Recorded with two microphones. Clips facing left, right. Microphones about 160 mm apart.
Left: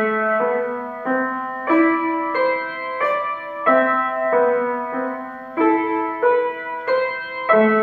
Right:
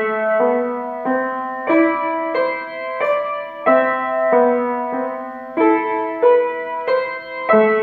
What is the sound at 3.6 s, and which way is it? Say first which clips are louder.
Music: right 2 dB; 15° right (ahead or behind).